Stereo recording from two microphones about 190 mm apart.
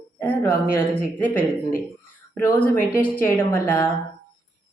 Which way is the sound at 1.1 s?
10° left (ahead or behind).